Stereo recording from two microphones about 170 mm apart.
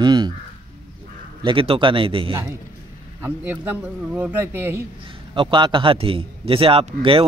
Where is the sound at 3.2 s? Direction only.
10° right (ahead or behind).